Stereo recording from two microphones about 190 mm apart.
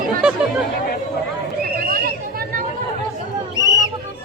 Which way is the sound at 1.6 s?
50° right (ahead or behind).